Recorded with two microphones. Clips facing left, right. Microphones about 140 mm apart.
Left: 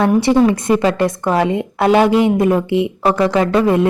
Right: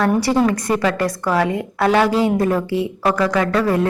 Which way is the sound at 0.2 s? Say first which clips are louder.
Left 4 dB; 25° left (ahead or behind).